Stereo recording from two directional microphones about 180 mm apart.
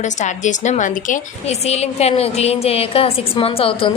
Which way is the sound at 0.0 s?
40° left (ahead or behind).